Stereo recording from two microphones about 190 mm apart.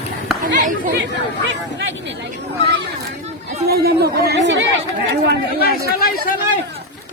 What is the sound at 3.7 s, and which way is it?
Speech, 55° right (ahead or behind).